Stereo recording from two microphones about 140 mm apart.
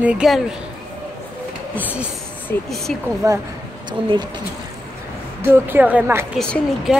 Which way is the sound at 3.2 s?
25° right (ahead or behind).